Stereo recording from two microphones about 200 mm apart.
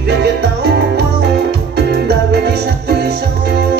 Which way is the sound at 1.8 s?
55° right (ahead or behind).